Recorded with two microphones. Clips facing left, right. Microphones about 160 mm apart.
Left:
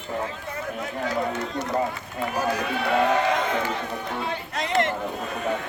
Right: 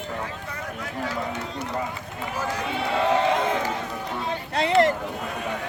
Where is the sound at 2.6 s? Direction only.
25° right (ahead or behind).